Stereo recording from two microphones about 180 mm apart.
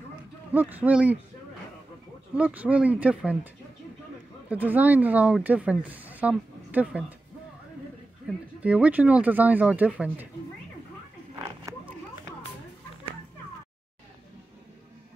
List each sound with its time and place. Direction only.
0.5 s speech: 10° right (ahead or behind)
2.3 s speech: 5° right (ahead or behind)
4.5 s speech: 10° right (ahead or behind)
8.5 s speech: 10° right (ahead or behind)
11.7 s a sound: 20° right (ahead or behind)